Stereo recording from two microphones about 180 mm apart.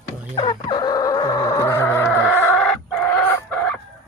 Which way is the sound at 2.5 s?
5° left (ahead or behind).